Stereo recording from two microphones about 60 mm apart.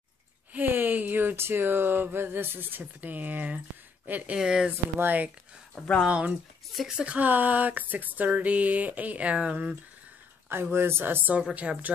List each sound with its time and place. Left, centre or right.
0.5 s speech: right
4.4 s speech: centre
5.0 s speech: right
5.8 s speech: left
6.0 s speech: right
6.8 s speech: centre
7.2 s speech: right
10.5 s speech: right
11.5 s speech: right